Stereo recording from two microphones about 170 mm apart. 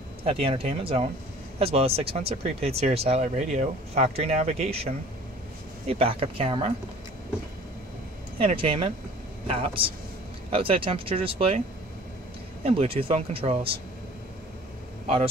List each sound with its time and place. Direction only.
0.2 s speech: 30° right (ahead or behind)
5.9 s speech: 35° right (ahead or behind)
8.4 s speech: 30° right (ahead or behind)
12.6 s speech: 35° right (ahead or behind)